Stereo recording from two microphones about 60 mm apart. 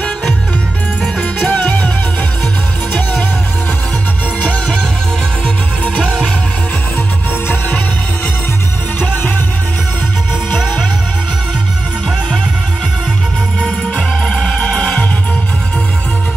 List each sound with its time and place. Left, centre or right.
1.5 s music: left
5.9 s music: centre
13.6 s music: centre